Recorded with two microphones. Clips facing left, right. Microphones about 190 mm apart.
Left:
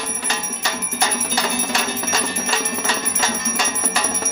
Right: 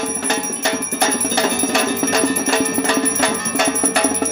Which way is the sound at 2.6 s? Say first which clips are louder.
Right 8 dB; 60° right (ahead or behind).